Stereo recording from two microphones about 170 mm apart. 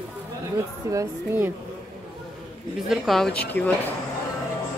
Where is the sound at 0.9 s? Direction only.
15° right (ahead or behind).